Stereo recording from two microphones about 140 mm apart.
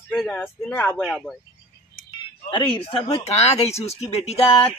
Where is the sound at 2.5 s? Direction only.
35° left (ahead or behind).